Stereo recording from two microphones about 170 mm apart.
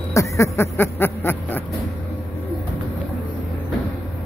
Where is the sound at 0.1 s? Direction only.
15° left (ahead or behind).